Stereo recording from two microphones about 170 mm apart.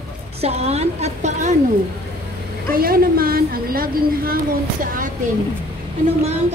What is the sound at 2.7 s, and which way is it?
A woman's voice, 60° right (ahead or behind).